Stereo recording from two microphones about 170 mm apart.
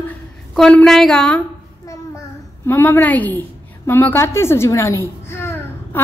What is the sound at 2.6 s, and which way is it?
A woman's voice, 15° left (ahead or behind).